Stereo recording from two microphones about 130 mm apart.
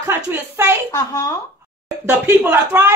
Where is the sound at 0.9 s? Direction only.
25° left (ahead or behind).